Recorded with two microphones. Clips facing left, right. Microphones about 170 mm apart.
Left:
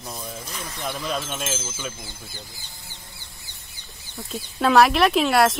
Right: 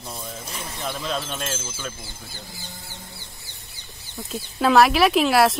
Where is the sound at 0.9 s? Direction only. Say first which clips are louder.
Even; 10° left (ahead or behind).